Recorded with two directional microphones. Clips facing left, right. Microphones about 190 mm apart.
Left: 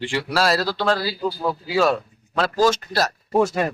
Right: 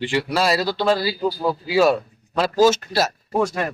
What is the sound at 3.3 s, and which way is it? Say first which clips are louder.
Speech: left 2 dB; 20° left (ahead or behind).